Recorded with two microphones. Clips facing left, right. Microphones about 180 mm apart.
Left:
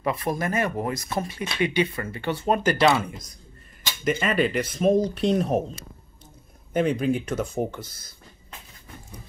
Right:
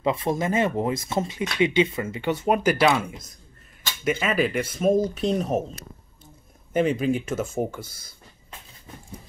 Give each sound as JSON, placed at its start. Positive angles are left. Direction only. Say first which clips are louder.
{"t": 0.0, "sound": "speech", "louder": "right 2 dB", "side_deg": -25}
{"t": 6.7, "sound": "speech", "louder": "right 1 dB", "side_deg": 0}